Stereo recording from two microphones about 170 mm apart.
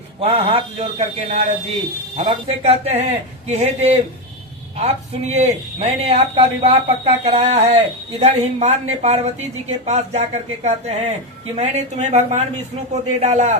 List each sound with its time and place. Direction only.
0.2 s a man's voice: 35° right (ahead or behind)